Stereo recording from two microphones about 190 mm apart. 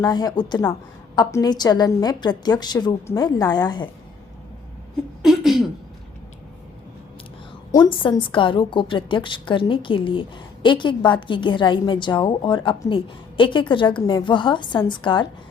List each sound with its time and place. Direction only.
0.0 s a woman's voice: 20° left (ahead or behind)
5.2 s a sound: centre (ahead or behind)
7.7 s a woman's voice: 25° left (ahead or behind)